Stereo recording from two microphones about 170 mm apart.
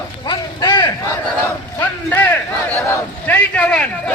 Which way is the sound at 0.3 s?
25° left (ahead or behind).